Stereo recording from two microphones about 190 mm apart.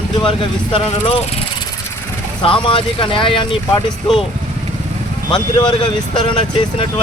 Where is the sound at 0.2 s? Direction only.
25° left (ahead or behind).